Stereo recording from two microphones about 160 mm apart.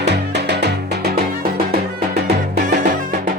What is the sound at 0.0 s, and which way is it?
Music, 90° right.